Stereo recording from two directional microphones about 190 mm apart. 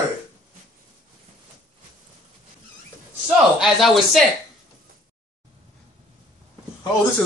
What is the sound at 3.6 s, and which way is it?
Speech, centre (ahead or behind).